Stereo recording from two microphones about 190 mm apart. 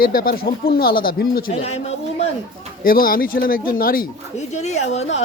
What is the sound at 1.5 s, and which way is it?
Speech, 35° left (ahead or behind).